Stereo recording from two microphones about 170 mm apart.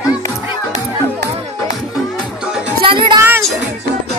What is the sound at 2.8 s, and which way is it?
Music, 30° right (ahead or behind).